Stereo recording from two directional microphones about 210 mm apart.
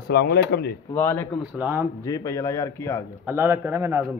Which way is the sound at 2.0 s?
15° left (ahead or behind).